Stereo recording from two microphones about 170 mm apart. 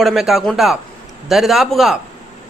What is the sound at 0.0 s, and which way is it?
Speech, centre (ahead or behind).